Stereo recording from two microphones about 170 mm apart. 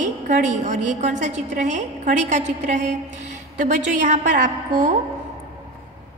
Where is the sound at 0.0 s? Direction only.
45° right (ahead or behind).